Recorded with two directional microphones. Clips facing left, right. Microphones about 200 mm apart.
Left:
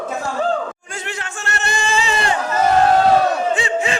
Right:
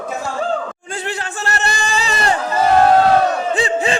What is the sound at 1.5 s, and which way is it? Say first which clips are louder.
Singing: even; 35° right (ahead or behind).